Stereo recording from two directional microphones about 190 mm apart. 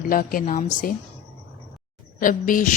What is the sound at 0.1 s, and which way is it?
Speech, 50° left (ahead or behind).